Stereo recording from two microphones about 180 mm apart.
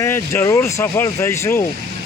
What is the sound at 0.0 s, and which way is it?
Speech, 15° left (ahead or behind).